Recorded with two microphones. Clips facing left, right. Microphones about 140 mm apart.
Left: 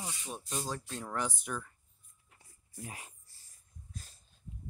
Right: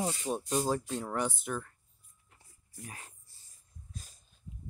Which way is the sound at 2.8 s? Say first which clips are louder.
Left 2 dB; 20° left (ahead or behind).